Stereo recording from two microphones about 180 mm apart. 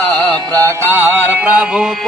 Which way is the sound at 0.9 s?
10° right (ahead or behind).